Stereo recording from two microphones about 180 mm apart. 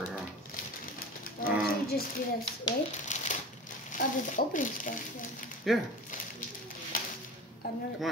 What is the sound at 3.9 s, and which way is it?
Speech, 45° left (ahead or behind).